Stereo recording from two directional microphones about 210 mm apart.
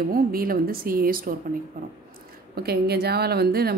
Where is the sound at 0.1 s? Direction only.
45° right (ahead or behind).